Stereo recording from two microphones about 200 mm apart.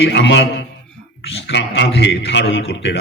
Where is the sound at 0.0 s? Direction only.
60° left (ahead or behind).